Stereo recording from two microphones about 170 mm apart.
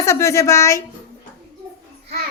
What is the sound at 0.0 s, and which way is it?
Speech, 15° left (ahead or behind).